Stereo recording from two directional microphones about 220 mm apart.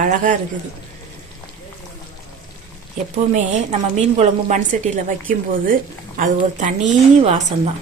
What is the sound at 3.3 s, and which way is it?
A woman's voice, 30° right (ahead or behind).